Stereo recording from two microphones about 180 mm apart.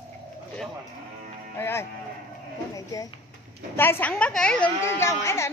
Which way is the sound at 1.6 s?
15° left (ahead or behind).